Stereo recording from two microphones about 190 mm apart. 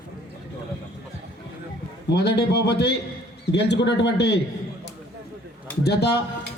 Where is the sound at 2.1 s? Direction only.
60° left (ahead or behind).